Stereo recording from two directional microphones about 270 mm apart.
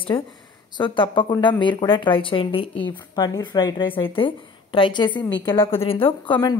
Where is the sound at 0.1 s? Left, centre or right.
Centre.